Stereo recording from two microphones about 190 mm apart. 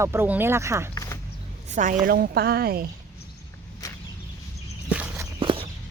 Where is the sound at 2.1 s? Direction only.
55° right (ahead or behind).